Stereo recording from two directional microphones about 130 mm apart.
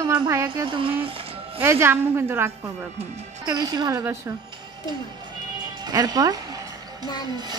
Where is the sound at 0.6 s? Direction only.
40° right (ahead or behind).